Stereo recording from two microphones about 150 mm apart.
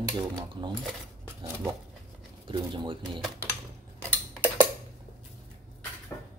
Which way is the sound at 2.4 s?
30° right (ahead or behind).